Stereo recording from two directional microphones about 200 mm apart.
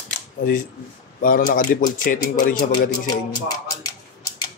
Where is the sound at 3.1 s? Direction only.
20° left (ahead or behind).